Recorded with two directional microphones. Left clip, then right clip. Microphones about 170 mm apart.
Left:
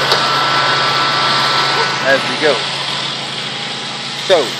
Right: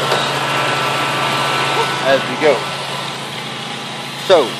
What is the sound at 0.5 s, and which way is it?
Vehicle, 35° right (ahead or behind).